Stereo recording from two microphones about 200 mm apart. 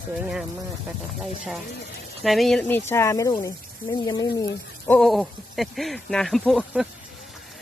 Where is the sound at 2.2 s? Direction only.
Centre (ahead or behind); by 4.5 s 20° left (ahead or behind).